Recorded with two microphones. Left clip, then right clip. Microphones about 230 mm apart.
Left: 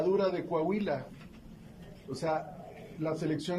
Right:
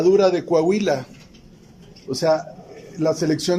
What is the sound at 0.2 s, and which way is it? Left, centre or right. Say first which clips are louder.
Speech: right 13 dB; right.